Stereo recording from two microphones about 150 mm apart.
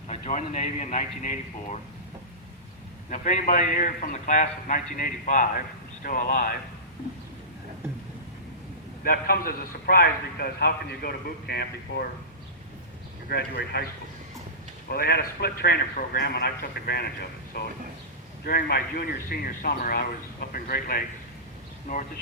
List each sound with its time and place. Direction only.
0.1 s a man's voice: 55° left (ahead or behind)
3.1 s a man's voice: 60° left (ahead or behind)
9.0 s a man's voice: 75° left (ahead or behind)
13.7 s a man's voice: 90° left; by 21.0 s 75° left (ahead or behind)